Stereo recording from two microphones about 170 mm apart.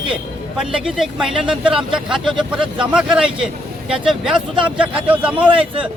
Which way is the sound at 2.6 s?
30° right (ahead or behind).